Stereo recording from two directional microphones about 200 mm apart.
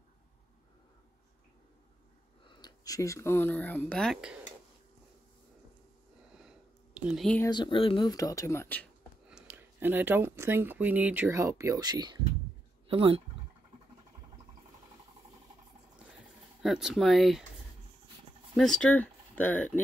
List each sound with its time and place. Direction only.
2.6 s speech: 20° left (ahead or behind); by 4.4 s centre (ahead or behind)
7.1 s speech: centre (ahead or behind)
7.4 s speech: 20° left (ahead or behind)
9.3 s speech: 10° right (ahead or behind); by 13.2 s 25° right (ahead or behind)
16.6 s speech: centre (ahead or behind)
18.5 s speech: centre (ahead or behind)